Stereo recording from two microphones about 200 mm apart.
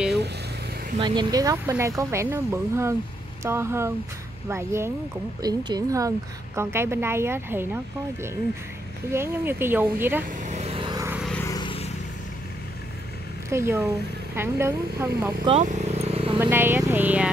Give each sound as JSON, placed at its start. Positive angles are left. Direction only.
{"t": 0.9, "sound": "speech", "side_deg": -25}
{"t": 10.3, "sound": "vehicle", "side_deg": -40}
{"t": 11.1, "sound": "vehicle", "side_deg": 0}
{"t": 11.4, "sound": "vehicle", "side_deg": 20}
{"t": 13.5, "sound": "speech", "side_deg": -15}
{"t": 15.4, "sound": "vehicle", "side_deg": -35}
{"t": 16.3, "sound": "vehicle", "side_deg": -10}